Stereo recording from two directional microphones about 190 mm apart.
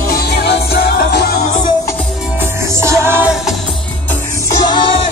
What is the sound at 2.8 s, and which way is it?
Music, 15° right (ahead or behind).